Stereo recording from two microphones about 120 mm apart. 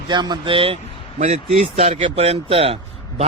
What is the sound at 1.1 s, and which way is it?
Speech, 80° right.